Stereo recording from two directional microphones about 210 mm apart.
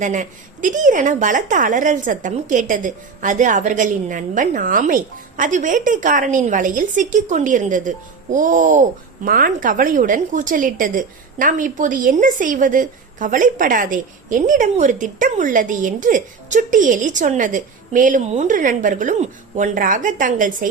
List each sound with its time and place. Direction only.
0.0 s a woman's voice: 35° right (ahead or behind)